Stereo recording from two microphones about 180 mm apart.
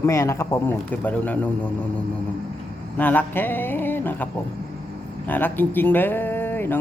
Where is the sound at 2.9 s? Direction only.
10° left (ahead or behind).